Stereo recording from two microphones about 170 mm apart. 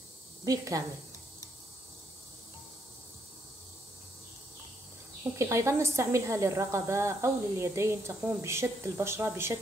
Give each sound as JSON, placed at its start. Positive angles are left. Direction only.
{"t": 0.5, "sound": "a woman's voice", "side_deg": -20}
{"t": 5.4, "sound": "a woman's voice", "side_deg": -15}